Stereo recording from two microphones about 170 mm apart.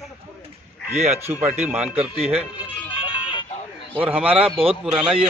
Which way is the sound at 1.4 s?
10° right (ahead or behind).